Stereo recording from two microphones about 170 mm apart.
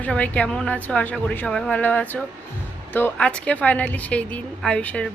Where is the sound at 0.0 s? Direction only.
10° left (ahead or behind).